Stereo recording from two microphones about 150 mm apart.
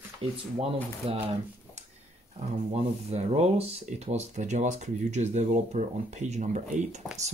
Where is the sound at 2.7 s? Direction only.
45° right (ahead or behind).